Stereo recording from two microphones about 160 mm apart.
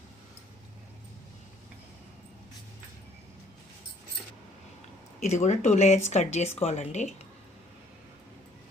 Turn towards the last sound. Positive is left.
turn(degrees=45)  # may be behind; listen again after turning